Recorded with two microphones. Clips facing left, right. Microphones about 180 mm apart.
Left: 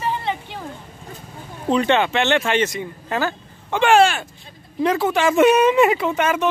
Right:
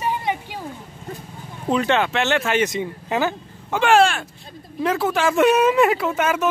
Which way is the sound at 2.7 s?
15° right (ahead or behind).